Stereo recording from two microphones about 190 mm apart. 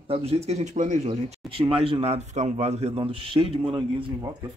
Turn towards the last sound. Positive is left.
turn(degrees=-20)  # may be behind; listen again after turning